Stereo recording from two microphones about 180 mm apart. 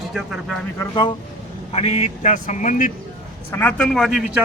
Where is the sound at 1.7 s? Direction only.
35° left (ahead or behind).